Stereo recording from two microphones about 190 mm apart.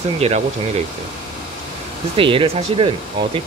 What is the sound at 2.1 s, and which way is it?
Speech, 25° right (ahead or behind).